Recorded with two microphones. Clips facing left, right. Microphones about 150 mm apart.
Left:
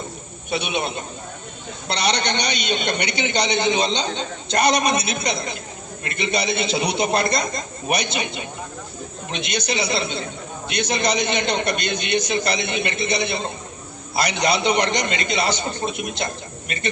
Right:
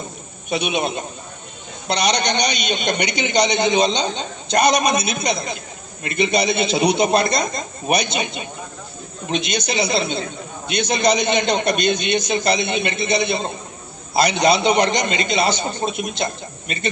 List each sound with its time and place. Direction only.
0.5 s a man's voice: 20° right (ahead or behind)